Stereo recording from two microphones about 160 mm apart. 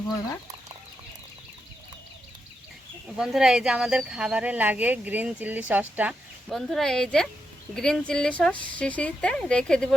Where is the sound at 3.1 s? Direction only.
5° right (ahead or behind).